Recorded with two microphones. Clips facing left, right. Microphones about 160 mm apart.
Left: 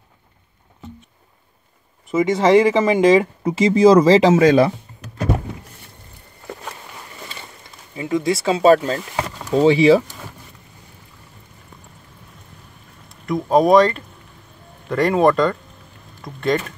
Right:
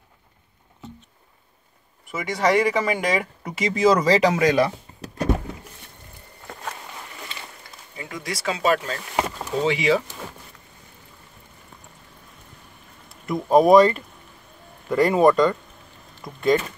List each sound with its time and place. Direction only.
2.0 s speech: 25° left (ahead or behind)
7.9 s speech: 25° left (ahead or behind)
13.3 s speech: centre (ahead or behind)